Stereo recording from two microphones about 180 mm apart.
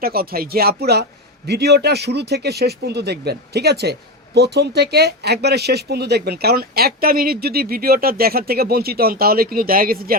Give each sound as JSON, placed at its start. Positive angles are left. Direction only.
{"t": 0.0, "sound": "speech", "side_deg": -55}